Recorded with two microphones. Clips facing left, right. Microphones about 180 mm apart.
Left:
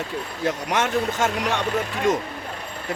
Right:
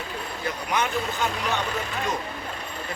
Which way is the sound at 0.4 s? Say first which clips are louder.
Left 4 dB; 85° left.